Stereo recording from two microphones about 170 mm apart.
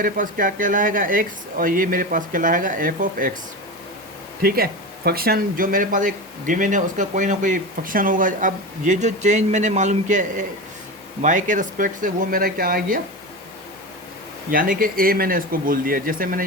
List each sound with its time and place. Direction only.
0.0 s speech: 55° right (ahead or behind)
4.4 s speech: 60° right (ahead or behind)
14.5 s speech: 55° right (ahead or behind)